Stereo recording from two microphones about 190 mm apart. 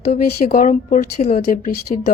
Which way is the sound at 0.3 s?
45° left (ahead or behind).